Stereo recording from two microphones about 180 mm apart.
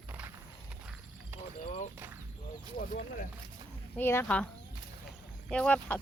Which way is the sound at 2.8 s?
45° left (ahead or behind).